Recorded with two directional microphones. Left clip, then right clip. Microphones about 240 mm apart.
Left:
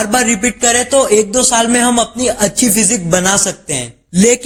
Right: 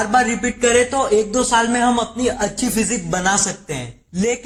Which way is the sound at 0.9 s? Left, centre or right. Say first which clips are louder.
Left 6 dB; left.